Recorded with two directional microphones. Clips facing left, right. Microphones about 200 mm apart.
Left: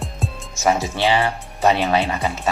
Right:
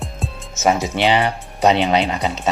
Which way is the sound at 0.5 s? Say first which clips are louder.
Right 2 dB; 20° right (ahead or behind).